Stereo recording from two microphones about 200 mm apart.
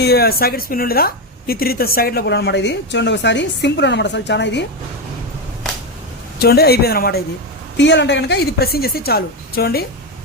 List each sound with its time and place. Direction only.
0.0 s a woman's voice: 50° left (ahead or behind)
6.4 s a woman's voice: 50° left (ahead or behind)
7.8 s a woman's voice: 60° left (ahead or behind)